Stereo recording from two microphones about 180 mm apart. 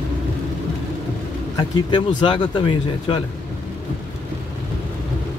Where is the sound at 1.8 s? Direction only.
25° left (ahead or behind).